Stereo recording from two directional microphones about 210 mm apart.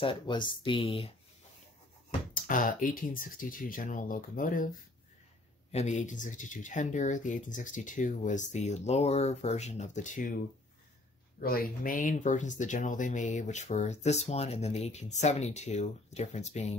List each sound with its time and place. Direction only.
0.0 s speech: 25° left (ahead or behind)
2.3 s speech: 40° left (ahead or behind)
5.7 s speech: 35° left (ahead or behind)